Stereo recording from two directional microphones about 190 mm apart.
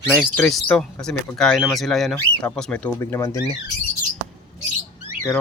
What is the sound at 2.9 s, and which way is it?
Speech, 15° left (ahead or behind).